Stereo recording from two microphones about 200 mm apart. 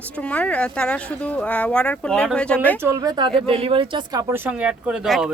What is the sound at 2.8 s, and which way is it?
Speech, 15° right (ahead or behind).